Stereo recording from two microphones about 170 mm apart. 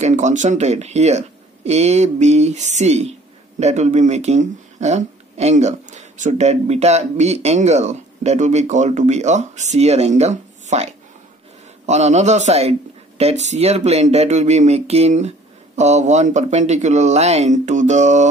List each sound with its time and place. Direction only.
0.0 s speech: 45° right (ahead or behind)